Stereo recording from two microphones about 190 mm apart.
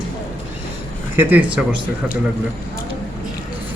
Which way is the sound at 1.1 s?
10° right (ahead or behind).